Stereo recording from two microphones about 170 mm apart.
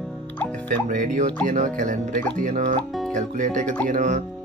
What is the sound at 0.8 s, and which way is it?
Speech, 50° right (ahead or behind).